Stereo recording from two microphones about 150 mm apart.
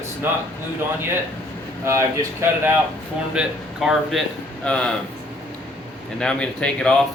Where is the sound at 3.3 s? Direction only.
5° right (ahead or behind).